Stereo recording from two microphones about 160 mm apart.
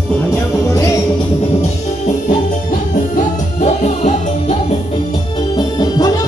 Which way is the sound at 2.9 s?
50° left (ahead or behind).